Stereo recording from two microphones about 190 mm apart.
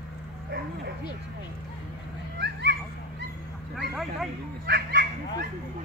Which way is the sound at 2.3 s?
60° right (ahead or behind).